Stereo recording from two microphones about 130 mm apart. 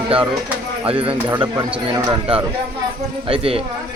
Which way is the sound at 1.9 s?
30° right (ahead or behind).